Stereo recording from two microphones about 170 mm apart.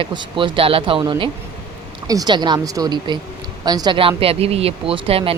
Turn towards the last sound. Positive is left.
turn(degrees=-35)  # may be behind; listen again after turning